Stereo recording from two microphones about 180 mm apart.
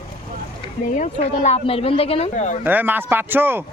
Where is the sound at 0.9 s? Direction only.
40° left (ahead or behind).